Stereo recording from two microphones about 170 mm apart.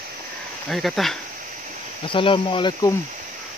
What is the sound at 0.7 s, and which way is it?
Speech, centre (ahead or behind).